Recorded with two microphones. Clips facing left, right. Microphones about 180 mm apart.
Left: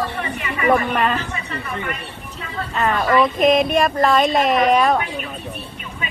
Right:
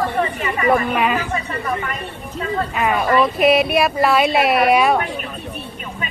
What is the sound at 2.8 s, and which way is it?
Speech, 10° right (ahead or behind).